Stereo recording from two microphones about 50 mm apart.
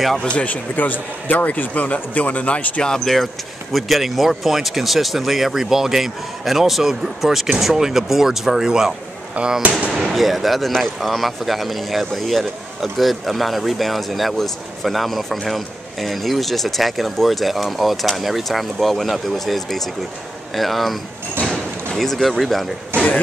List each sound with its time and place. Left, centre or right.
0.2 s speech: left
0.7 s a man's voice: left
2.9 s speech: centre
9.6 s speech: right
9.9 s speech: centre
21.5 s a sound: centre
22.9 s a sound: right